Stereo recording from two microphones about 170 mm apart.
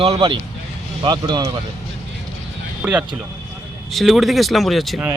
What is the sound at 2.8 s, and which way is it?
Speech, 5° right (ahead or behind).